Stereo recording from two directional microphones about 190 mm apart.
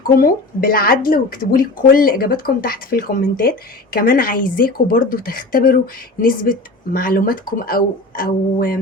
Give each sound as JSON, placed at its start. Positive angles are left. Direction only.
{"t": 0.0, "sound": "a woman's voice", "side_deg": 50}